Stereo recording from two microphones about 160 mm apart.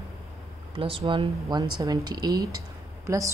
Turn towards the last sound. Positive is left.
turn(degrees=-20)  # may be behind; listen again after turning